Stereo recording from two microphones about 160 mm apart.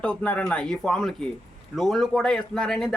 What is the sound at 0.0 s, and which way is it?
A man's voice, 5° left (ahead or behind).